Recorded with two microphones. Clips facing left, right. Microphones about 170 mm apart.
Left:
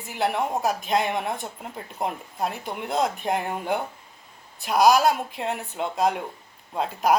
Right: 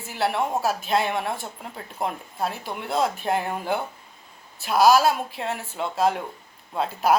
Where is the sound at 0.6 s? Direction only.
15° left (ahead or behind).